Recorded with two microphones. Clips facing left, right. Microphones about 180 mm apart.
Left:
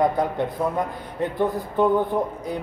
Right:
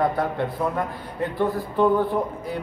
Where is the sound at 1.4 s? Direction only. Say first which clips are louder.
Even; 20° left (ahead or behind).